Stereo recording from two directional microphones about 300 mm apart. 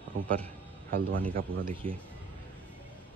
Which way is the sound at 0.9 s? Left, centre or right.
Right.